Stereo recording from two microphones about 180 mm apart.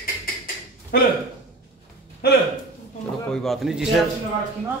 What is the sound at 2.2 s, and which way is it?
Speech, 65° left (ahead or behind).